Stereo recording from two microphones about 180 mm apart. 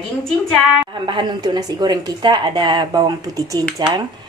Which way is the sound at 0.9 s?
25° right (ahead or behind).